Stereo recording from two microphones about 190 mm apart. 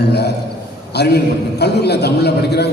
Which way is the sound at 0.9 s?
60° left (ahead or behind).